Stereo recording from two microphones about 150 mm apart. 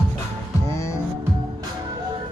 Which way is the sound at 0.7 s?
20° left (ahead or behind).